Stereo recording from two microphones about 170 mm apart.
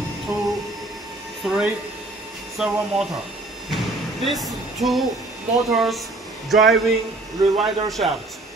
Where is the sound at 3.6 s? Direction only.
Centre (ahead or behind).